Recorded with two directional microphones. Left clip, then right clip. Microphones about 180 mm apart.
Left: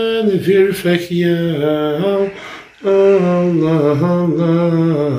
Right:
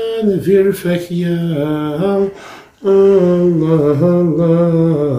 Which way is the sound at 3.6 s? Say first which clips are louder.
Right 1 dB; 40° right (ahead or behind).